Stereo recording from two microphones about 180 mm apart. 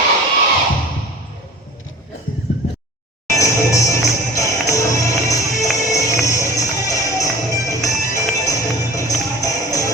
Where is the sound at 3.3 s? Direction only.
15° left (ahead or behind).